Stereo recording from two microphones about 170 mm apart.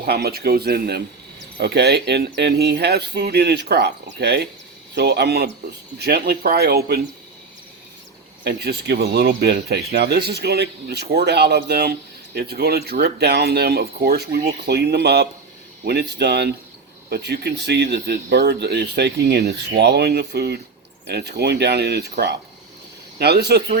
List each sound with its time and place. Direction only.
0.0 s speech: 65° right (ahead or behind)
8.4 s speech: 75° right (ahead or behind)
23.1 s speech: 70° right (ahead or behind)